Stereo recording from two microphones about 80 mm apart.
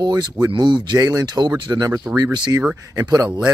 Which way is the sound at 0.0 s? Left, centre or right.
Right.